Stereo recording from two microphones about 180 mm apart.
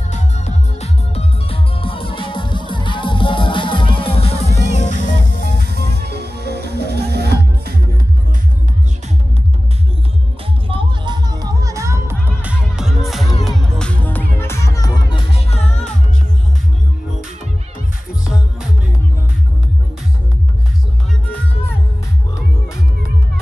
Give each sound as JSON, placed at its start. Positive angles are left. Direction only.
{"t": 0.1, "sound": "music", "side_deg": 40}
{"t": 4.6, "sound": "music", "side_deg": 40}
{"t": 5.9, "sound": "music", "side_deg": -65}
{"t": 10.7, "sound": "music", "side_deg": -25}
{"t": 18.2, "sound": "music", "side_deg": -5}